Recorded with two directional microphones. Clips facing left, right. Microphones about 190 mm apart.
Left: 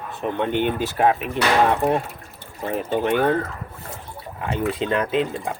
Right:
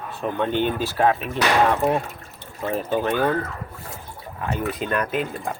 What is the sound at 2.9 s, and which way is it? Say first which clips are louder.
Speech: left 2 dB; 20° left (ahead or behind).